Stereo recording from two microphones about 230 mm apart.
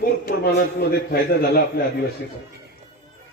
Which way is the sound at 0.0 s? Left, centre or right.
Left.